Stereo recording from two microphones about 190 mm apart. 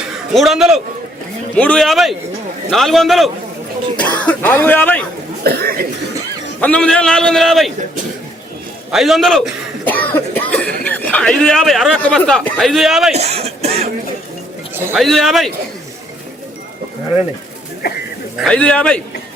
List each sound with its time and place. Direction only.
0.3 s a man's voice: centre (ahead or behind)
5.4 s speech: 55° right (ahead or behind)
6.6 s a man's voice: 5° left (ahead or behind)
8.9 s speech: centre (ahead or behind)
13.1 s speech: 35° right (ahead or behind)
14.9 s a man's voice: centre (ahead or behind)
17.8 s goat: 55° left (ahead or behind)
18.4 s a man's voice: 5° left (ahead or behind)